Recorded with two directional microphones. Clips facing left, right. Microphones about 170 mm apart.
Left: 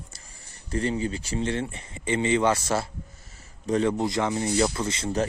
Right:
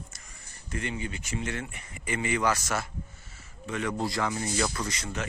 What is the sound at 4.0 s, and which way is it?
Speech, 20° left (ahead or behind).